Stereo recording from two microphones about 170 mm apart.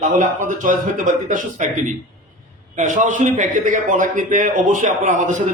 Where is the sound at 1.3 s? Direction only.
45° right (ahead or behind).